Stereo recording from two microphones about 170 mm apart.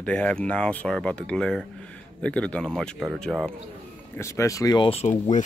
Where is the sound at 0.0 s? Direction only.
5° left (ahead or behind).